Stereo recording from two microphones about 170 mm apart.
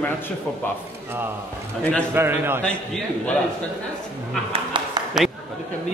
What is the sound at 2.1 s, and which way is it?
Speech, 10° right (ahead or behind).